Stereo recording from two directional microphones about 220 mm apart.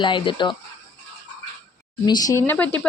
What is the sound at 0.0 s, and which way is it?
Speech, 20° left (ahead or behind).